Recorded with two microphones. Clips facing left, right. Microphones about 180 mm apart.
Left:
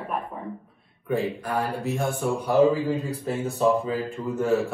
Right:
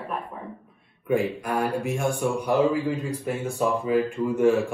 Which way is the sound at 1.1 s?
15° right (ahead or behind).